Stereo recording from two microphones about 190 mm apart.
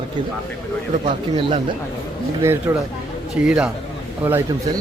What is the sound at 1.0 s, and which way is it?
Speech, 30° right (ahead or behind).